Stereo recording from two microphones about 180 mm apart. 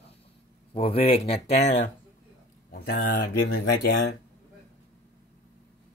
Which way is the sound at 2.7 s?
60° left (ahead or behind).